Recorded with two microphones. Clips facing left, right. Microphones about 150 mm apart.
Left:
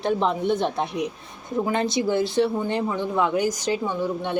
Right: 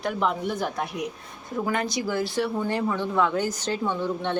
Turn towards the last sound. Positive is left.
turn(degrees=10)  # may be behind; listen again after turning